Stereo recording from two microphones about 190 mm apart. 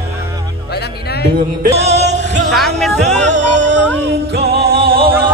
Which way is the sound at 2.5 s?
Centre (ahead or behind).